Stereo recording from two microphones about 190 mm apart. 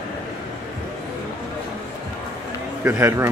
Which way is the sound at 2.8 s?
15° right (ahead or behind).